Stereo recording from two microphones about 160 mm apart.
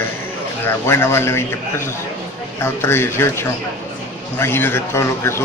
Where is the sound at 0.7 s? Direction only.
15° left (ahead or behind).